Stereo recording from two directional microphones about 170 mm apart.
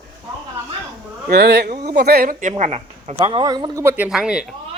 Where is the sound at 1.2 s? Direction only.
70° right (ahead or behind); by 3.1 s 40° right (ahead or behind).